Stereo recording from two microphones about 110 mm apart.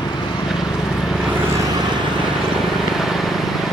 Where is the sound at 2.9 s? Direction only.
Centre (ahead or behind).